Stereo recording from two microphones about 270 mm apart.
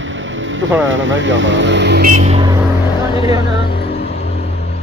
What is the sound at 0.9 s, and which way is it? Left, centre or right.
Speech, right.